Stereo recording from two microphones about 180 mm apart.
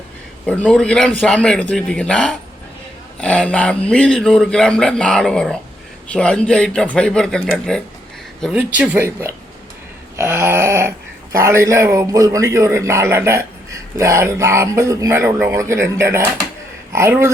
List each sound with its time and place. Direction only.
0.4 s a man's voice: 5° left (ahead or behind); by 17.3 s 15° right (ahead or behind)